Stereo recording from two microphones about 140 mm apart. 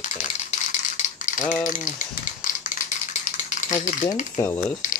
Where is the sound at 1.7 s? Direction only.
70° left (ahead or behind).